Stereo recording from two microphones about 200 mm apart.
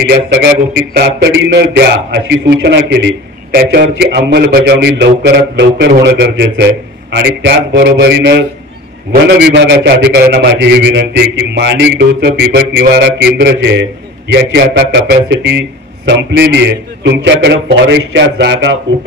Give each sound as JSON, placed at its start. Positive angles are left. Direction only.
{"t": 0.9, "sound": "a man's voice", "side_deg": -55}